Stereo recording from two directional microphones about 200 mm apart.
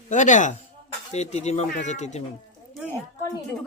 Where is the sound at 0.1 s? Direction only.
40° left (ahead or behind).